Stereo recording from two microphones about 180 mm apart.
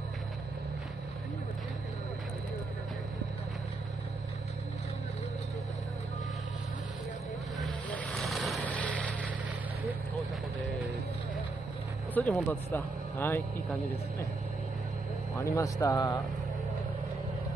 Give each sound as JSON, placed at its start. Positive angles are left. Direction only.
{"t": 7.5, "sound": "vehicle", "side_deg": 0}
{"t": 12.1, "sound": "speech", "side_deg": 10}
{"t": 15.3, "sound": "speech", "side_deg": 15}